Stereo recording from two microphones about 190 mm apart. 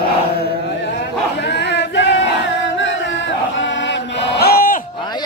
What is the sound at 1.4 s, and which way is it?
Chant, 65° left (ahead or behind).